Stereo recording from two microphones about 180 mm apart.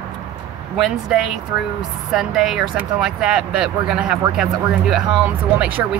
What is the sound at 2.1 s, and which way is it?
Speech, centre (ahead or behind).